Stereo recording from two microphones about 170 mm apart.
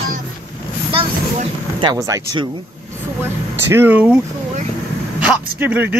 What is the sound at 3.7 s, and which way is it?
Speech, 10° right (ahead or behind).